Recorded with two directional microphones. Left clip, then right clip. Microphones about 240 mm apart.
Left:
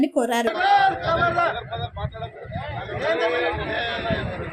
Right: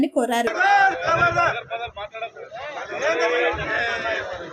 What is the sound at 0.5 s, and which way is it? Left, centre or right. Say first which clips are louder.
Speech: right 1 dB; centre.